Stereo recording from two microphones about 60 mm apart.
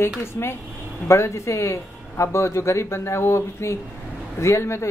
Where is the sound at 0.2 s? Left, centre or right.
Left.